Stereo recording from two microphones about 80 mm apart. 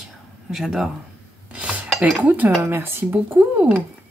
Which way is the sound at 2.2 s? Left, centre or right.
Centre.